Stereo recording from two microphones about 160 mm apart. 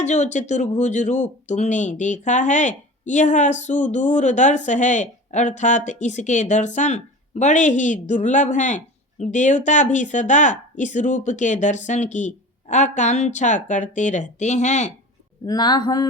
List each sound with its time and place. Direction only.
0.0 s speech: 45° left (ahead or behind)
15.4 s speech: 25° left (ahead or behind)